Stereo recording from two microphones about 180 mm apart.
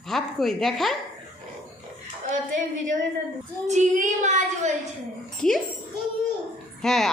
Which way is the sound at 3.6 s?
40° right (ahead or behind).